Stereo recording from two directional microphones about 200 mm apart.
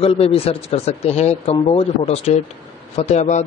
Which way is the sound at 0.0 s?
30° left (ahead or behind).